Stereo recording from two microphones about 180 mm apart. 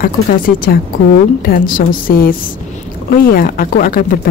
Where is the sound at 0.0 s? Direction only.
55° left (ahead or behind).